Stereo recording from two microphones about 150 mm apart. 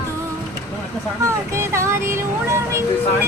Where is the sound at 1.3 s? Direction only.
20° right (ahead or behind).